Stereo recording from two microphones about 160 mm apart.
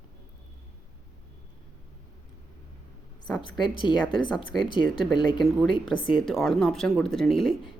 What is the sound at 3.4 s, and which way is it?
Speech, 30° left (ahead or behind).